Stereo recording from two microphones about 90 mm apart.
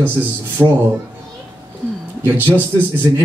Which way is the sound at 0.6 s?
10° right (ahead or behind).